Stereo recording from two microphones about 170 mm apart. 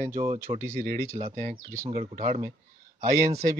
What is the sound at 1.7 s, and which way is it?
Speech, 15° right (ahead or behind).